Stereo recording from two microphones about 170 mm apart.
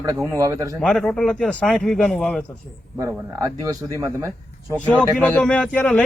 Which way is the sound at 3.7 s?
15° right (ahead or behind).